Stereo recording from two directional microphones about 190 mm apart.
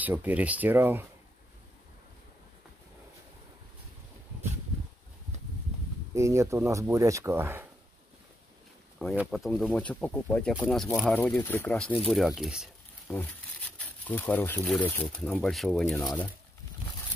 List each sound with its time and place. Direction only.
0.0 s speech: 10° right (ahead or behind)
6.1 s speech: 15° right (ahead or behind)
8.9 s speech: 5° right (ahead or behind)
13.1 s speech: 10° left (ahead or behind)